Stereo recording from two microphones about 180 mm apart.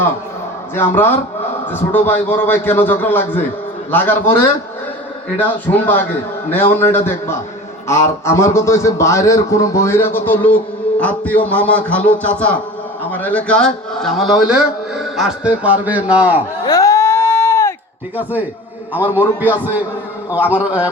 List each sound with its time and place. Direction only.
0.8 s a man's voice: 10° left (ahead or behind)
5.4 s a man's voice: 10° left (ahead or behind); by 16.4 s 5° right (ahead or behind)
16.6 s a sound: 20° left (ahead or behind)
18.2 s a man's voice: 10° right (ahead or behind)
20.3 s a man's voice: 10° right (ahead or behind)